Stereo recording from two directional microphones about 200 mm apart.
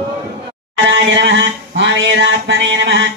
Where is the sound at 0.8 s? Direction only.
60° right (ahead or behind).